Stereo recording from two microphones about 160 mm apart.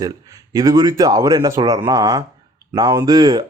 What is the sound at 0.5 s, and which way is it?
Speech, 20° right (ahead or behind).